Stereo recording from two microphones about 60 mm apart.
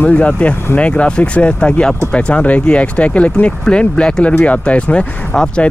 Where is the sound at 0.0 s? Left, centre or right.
Left.